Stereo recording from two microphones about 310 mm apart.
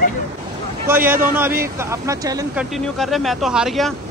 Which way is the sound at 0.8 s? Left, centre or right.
Centre.